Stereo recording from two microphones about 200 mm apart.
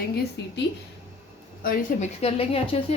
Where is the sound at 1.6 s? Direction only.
45° left (ahead or behind).